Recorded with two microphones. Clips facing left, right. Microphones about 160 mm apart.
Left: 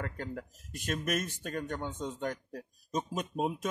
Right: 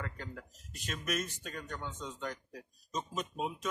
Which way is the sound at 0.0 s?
45° left (ahead or behind).